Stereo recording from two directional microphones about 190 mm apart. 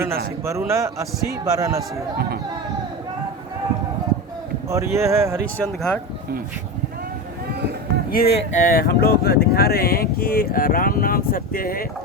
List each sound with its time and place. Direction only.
0.7 s a man's voice: 15° right (ahead or behind)
4.7 s a man's voice: 15° right (ahead or behind)
5.5 s speech: 5° left (ahead or behind)
8.1 s speech: 50° left (ahead or behind)